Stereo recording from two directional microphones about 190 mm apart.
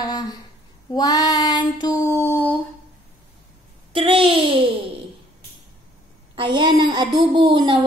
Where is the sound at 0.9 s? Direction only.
20° left (ahead or behind).